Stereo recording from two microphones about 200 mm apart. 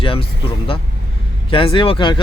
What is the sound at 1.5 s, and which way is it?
Speech, 25° left (ahead or behind).